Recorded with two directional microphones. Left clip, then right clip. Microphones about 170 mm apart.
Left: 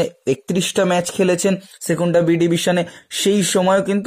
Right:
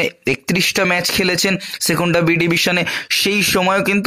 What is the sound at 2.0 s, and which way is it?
Speech, 15° right (ahead or behind).